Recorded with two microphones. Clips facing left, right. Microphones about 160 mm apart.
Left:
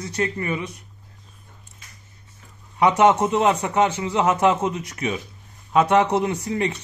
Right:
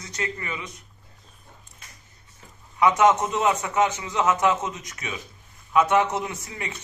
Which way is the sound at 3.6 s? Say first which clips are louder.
Left 3 dB; 35° left (ahead or behind).